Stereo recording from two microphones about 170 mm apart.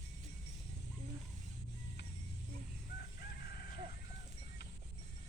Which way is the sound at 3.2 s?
65° left (ahead or behind).